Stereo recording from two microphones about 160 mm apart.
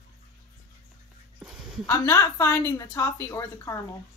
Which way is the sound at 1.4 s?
5° right (ahead or behind).